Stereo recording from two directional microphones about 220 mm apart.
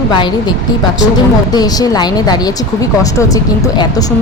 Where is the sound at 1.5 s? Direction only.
15° left (ahead or behind).